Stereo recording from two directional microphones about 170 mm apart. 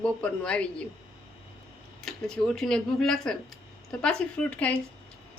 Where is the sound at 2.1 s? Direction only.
5° left (ahead or behind).